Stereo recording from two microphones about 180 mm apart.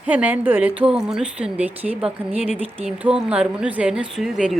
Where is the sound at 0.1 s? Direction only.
10° right (ahead or behind).